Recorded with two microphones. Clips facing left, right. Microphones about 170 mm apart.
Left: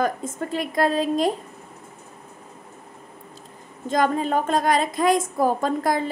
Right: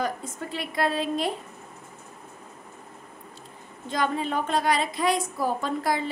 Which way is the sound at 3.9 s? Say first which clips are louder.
Left 5 dB; 45° left (ahead or behind).